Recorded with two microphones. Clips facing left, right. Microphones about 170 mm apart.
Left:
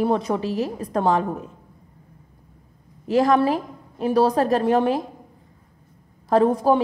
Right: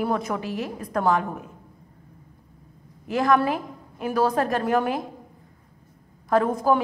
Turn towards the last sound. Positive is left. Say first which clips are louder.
# left 3 dB
turn(degrees=30)  # may be behind; listen again after turning